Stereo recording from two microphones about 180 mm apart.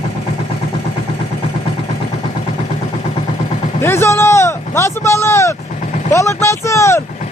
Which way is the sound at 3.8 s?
15° left (ahead or behind).